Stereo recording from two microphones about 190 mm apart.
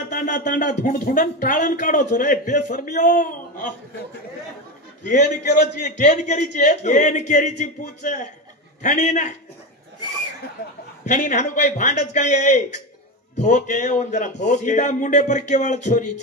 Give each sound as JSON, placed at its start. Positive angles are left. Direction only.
{"t": 0.1, "sound": "speech", "side_deg": 50}
{"t": 5.0, "sound": "a man's voice", "side_deg": 40}
{"t": 10.6, "sound": "speech", "side_deg": 55}
{"t": 11.1, "sound": "a man's voice", "side_deg": 40}